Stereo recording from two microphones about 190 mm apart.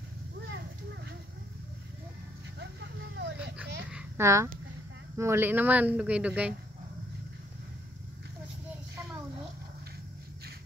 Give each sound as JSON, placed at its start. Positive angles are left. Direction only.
{"t": 2.6, "sound": "vehicle", "side_deg": -65}
{"t": 3.9, "sound": "a sound", "side_deg": -15}
{"t": 5.1, "sound": "speech", "side_deg": -15}